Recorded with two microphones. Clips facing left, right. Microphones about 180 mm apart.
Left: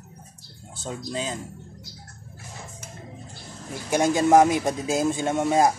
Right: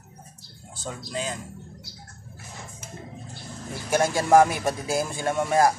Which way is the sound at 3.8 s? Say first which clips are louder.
Left 2 dB; 20° left (ahead or behind).